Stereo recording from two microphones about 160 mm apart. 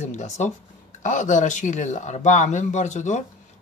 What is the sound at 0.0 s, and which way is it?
A man's voice, 45° left (ahead or behind).